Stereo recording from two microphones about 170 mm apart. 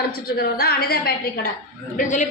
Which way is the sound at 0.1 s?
65° left (ahead or behind).